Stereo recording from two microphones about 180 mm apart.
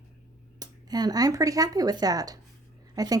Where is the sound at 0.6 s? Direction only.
20° right (ahead or behind).